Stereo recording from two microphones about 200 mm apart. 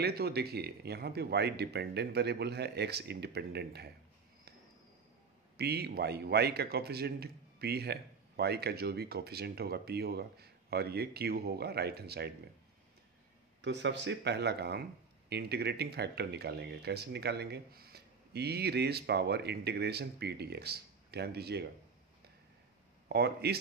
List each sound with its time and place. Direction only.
0.0 s a man's voice: 50° right (ahead or behind)
5.6 s a man's voice: 55° right (ahead or behind)
13.6 s speech: 60° right (ahead or behind)
23.0 s speech: 55° right (ahead or behind)